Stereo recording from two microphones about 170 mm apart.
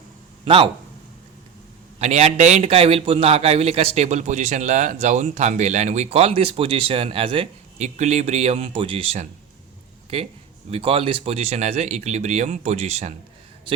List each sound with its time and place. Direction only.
0.4 s speech: 30° right (ahead or behind)
2.0 s a man's voice: 40° right (ahead or behind)
10.7 s a man's voice: 35° right (ahead or behind)